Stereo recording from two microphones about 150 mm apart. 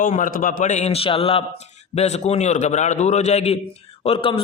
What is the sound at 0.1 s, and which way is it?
A man's voice, 65° left (ahead or behind).